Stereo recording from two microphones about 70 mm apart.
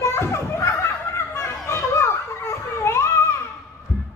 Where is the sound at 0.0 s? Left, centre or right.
Left.